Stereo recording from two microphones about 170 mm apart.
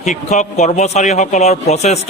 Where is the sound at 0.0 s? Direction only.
45° left (ahead or behind).